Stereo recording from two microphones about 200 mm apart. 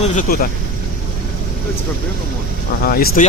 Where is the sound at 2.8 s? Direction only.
45° left (ahead or behind).